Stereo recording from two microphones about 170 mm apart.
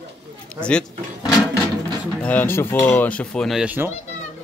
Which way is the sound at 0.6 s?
5° left (ahead or behind).